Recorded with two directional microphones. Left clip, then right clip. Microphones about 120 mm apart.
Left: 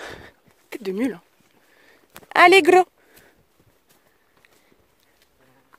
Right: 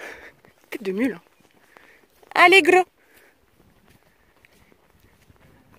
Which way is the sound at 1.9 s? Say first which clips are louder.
Left 5 dB; 35° left (ahead or behind).